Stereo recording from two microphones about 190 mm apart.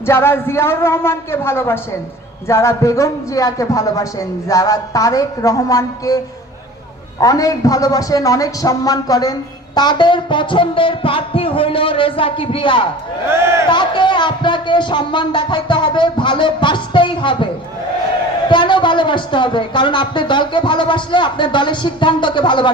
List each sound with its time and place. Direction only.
0.0 s a man's voice: 15° left (ahead or behind)
7.2 s a man's voice: 20° left (ahead or behind)
13.2 s a man's voice: 15° right (ahead or behind)
13.7 s a man's voice: 25° left (ahead or behind)